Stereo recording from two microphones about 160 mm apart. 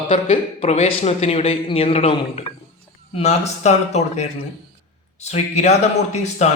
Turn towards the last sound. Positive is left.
turn(degrees=45)  # may be behind; listen again after turning